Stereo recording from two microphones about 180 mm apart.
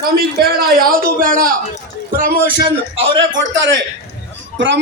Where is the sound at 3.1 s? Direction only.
90° right.